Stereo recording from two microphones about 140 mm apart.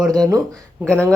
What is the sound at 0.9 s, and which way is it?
Speech, 10° left (ahead or behind).